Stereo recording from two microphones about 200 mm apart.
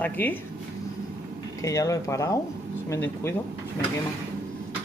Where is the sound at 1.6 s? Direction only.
15° left (ahead or behind).